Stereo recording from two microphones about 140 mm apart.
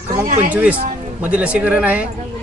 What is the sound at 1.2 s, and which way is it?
Speech, 10° right (ahead or behind).